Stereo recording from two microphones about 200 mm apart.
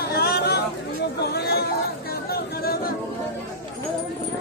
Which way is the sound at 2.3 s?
50° left (ahead or behind).